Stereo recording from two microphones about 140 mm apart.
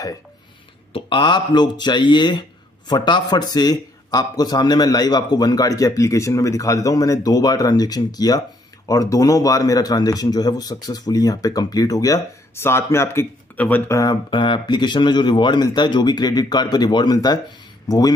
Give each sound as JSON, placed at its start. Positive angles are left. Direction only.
{"t": 0.9, "sound": "a man's voice", "side_deg": 35}
{"t": 14.3, "sound": "speech", "side_deg": 35}